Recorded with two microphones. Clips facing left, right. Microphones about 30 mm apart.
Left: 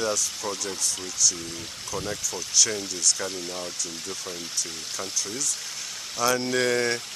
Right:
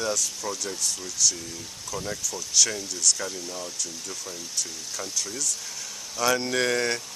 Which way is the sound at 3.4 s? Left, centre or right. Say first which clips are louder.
Left 1 dB; left.